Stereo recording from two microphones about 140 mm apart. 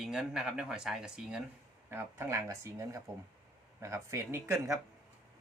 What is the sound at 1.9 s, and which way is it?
Speech, 15° right (ahead or behind).